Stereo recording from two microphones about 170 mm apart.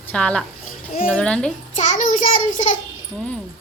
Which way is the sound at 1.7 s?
50° left (ahead or behind).